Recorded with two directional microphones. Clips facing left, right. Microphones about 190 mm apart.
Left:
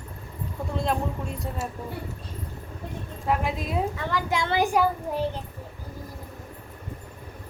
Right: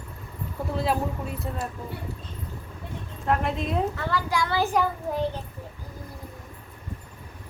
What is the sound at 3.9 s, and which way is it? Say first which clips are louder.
Speech: even; 20° left (ahead or behind).